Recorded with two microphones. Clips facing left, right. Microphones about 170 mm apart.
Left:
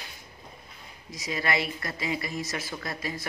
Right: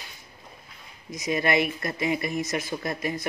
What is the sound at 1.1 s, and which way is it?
Speech, 20° right (ahead or behind).